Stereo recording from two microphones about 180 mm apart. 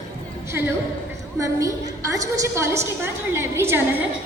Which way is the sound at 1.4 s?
15° right (ahead or behind).